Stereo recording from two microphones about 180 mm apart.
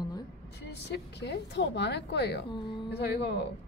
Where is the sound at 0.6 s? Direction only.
70° left (ahead or behind).